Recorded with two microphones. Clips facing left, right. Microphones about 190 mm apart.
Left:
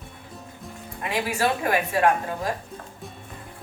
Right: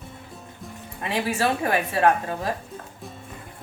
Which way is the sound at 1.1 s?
30° right (ahead or behind).